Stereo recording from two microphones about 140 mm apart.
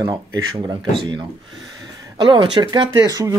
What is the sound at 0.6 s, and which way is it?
Speech, 30° right (ahead or behind).